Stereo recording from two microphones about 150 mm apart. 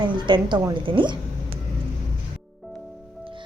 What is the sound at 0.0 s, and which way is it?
A woman's voice, 30° right (ahead or behind).